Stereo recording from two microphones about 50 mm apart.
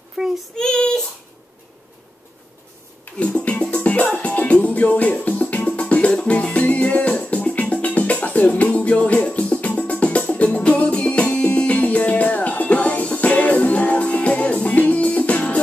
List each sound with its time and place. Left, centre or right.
0.2 s child singing: centre
0.6 s child singing: centre
3.2 s music: left